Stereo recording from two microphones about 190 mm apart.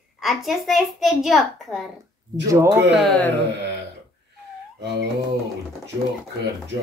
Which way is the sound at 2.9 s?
Centre (ahead or behind).